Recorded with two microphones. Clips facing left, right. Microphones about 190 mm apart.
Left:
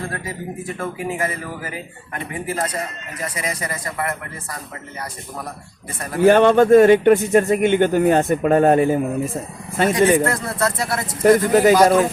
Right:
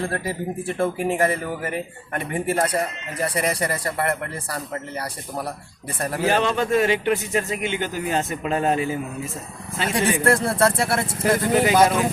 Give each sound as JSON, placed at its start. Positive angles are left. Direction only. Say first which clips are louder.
{"t": 0.0, "sound": "speech", "louder": "right 3 dB", "side_deg": -30}
{"t": 2.6, "sound": "speech", "louder": "right 3 dB", "side_deg": -30}
{"t": 6.1, "sound": "speech", "louder": "left 10 dB", "side_deg": 55}
{"t": 10.3, "sound": "speech", "louder": "right 3 dB", "side_deg": -30}
{"t": 11.2, "sound": "speech", "louder": "left 7 dB", "side_deg": 50}